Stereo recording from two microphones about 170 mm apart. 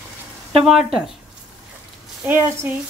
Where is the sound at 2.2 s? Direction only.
10° right (ahead or behind).